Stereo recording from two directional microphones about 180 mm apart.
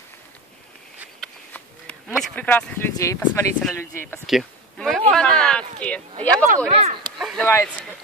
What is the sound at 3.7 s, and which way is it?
Speech, 15° left (ahead or behind).